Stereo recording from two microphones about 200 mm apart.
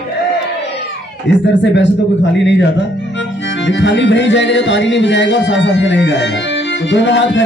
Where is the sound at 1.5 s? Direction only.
60° left (ahead or behind).